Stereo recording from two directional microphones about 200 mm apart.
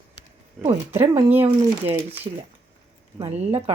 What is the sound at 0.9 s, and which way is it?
Speech, 10° right (ahead or behind).